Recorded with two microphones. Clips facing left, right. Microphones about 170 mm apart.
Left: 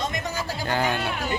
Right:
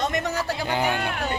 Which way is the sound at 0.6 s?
15° right (ahead or behind).